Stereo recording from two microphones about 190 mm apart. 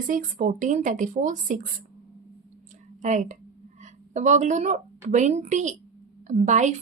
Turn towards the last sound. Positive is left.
turn(degrees=-40)  # may be behind; listen again after turning